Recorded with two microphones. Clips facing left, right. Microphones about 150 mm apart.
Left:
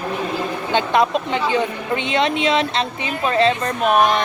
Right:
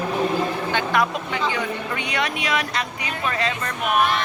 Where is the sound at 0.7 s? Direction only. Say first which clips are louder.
Left 7 dB; 20° left (ahead or behind).